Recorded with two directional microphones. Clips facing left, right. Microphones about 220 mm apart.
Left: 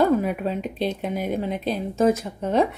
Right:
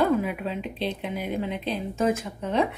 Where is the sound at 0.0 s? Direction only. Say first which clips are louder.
Left 3 dB; 45° left (ahead or behind).